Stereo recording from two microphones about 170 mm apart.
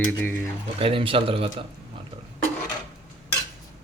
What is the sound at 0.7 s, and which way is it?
Speech, 30° right (ahead or behind).